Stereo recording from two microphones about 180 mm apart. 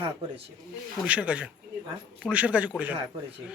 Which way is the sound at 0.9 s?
5° right (ahead or behind).